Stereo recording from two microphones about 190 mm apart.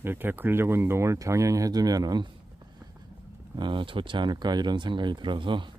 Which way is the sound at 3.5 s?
25° right (ahead or behind).